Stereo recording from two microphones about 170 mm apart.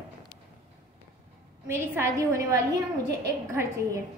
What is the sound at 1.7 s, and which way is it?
A woman's voice, 15° right (ahead or behind).